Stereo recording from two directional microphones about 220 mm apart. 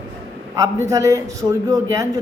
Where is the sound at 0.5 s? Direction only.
15° right (ahead or behind).